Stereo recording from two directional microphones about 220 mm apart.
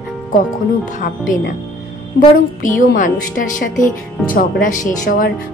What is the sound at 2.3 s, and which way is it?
Speech, 35° left (ahead or behind).